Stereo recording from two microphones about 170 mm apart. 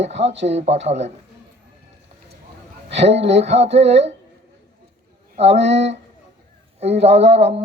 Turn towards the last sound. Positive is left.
turn(degrees=-40)  # may be behind; listen again after turning